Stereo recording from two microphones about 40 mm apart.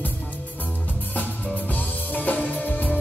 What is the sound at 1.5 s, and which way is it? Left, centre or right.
Music, left.